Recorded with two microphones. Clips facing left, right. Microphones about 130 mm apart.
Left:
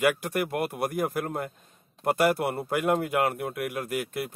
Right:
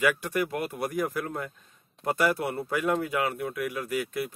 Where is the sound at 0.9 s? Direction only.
45° left (ahead or behind).